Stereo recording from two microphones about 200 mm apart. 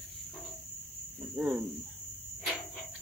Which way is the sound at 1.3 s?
5° right (ahead or behind).